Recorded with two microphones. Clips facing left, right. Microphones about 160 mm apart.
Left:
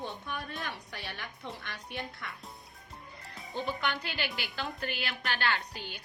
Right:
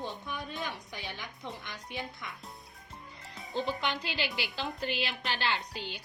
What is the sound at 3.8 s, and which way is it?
A woman's voice, 20° right (ahead or behind).